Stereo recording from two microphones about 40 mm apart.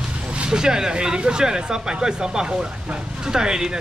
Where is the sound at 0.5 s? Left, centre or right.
Centre.